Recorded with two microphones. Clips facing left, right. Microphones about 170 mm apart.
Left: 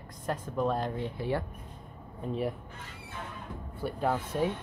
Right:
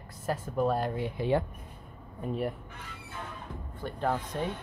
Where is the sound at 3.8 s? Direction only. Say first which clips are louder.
Left 1 dB; 10° left (ahead or behind).